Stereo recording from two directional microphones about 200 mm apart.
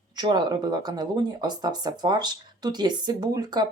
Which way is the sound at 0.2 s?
20° right (ahead or behind).